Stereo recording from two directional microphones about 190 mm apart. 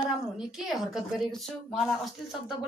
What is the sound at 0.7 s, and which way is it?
Speech, centre (ahead or behind).